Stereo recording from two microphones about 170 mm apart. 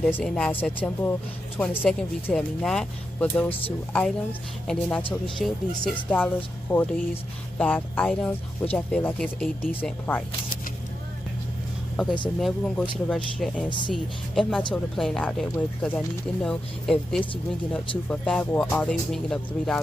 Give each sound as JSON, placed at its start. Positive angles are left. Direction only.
{"t": 0.0, "sound": "speech", "side_deg": 5}
{"t": 12.4, "sound": "speech", "side_deg": 5}
{"t": 13.7, "sound": "speech", "side_deg": 30}
{"t": 13.9, "sound": "speech", "side_deg": 0}